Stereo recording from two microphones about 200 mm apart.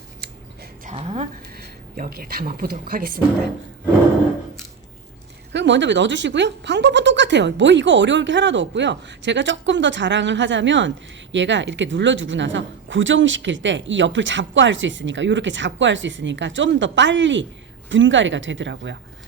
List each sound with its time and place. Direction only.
0.9 s a sound: 30° right (ahead or behind)
1.5 s speech: 50° right (ahead or behind)
5.5 s speech: 60° right (ahead or behind)